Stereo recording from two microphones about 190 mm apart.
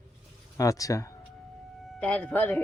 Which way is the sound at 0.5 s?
15° left (ahead or behind).